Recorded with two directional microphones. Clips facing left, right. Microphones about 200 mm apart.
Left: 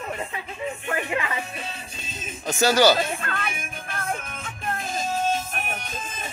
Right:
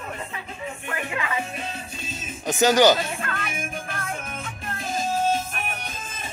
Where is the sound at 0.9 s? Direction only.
30° left (ahead or behind).